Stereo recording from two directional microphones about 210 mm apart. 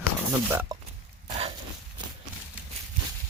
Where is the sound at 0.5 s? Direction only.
10° right (ahead or behind).